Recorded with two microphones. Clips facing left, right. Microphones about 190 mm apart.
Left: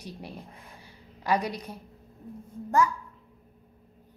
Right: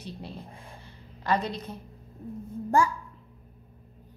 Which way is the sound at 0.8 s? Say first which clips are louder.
Left 1 dB; 10° left (ahead or behind).